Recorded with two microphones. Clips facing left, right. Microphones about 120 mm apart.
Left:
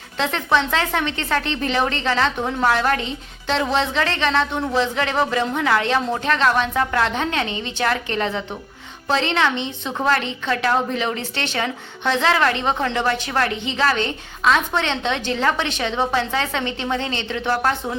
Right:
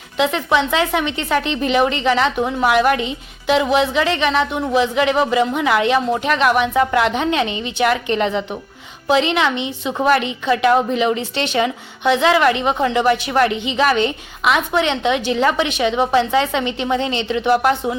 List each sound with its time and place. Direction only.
0.2 s a woman's voice: 15° right (ahead or behind)